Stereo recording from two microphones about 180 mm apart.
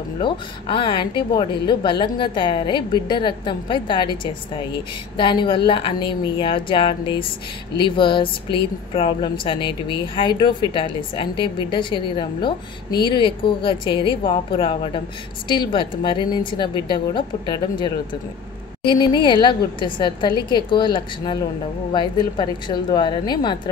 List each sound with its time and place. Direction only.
0.2 s speech: 30° left (ahead or behind)